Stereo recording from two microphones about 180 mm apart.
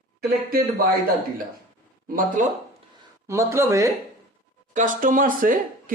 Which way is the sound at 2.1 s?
50° right (ahead or behind).